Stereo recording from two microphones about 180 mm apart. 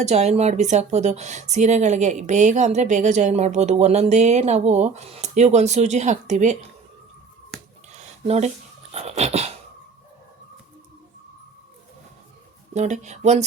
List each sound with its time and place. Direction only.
0.0 s speech: 40° right (ahead or behind)
8.3 s speech: 35° right (ahead or behind)
12.7 s speech: 40° right (ahead or behind)